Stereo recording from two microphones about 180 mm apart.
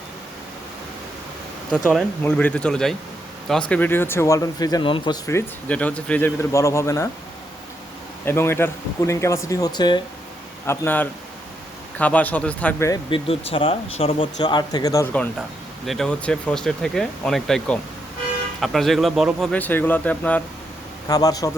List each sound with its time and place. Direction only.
1.7 s speech: 5° left (ahead or behind)
8.2 s speech: 15° left (ahead or behind)
10.7 s speech: 10° left (ahead or behind)
12.9 s speech: 30° left (ahead or behind)
15.9 s speech: 5° left (ahead or behind)
21.1 s speech: 20° left (ahead or behind)